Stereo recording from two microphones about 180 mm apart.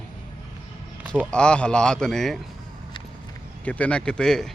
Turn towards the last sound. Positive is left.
turn(degrees=5)  # may be behind; listen again after turning